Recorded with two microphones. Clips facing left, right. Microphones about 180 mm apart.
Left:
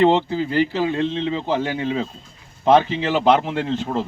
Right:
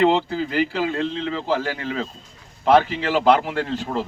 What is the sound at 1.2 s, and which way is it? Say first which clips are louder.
Speech: left 2 dB; 25° left (ahead or behind).